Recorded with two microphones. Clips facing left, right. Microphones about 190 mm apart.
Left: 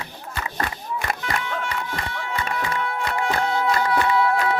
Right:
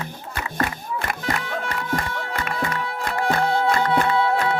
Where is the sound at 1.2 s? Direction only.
35° right (ahead or behind).